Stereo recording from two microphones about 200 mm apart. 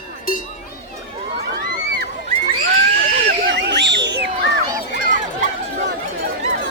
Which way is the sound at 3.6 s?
60° right (ahead or behind).